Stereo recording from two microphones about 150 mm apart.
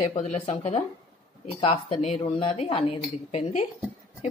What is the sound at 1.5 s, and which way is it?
A woman's voice, 35° left (ahead or behind).